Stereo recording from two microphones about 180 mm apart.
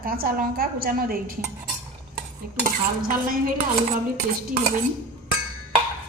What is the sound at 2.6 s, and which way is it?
Dishes, 50° right (ahead or behind).